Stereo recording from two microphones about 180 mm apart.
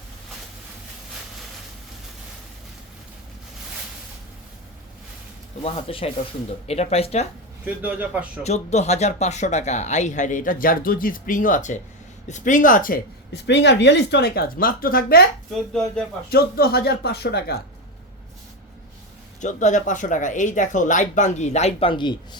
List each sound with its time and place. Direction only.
5.6 s speech: 30° left (ahead or behind)
7.6 s a man's voice: 10° right (ahead or behind)
8.4 s speech: 40° left (ahead or behind); by 15.2 s 55° left (ahead or behind)
15.5 s dishes: 5° left (ahead or behind)
16.3 s speech: 60° left (ahead or behind)
19.4 s speech: 40° left (ahead or behind); by 22.4 s 25° left (ahead or behind)